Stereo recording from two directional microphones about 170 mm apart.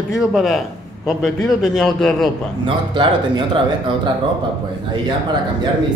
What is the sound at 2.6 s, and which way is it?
Speech, 30° right (ahead or behind).